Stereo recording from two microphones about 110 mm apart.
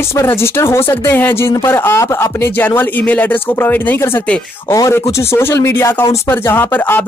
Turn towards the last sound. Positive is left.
turn(degrees=20)  # may be behind; listen again after turning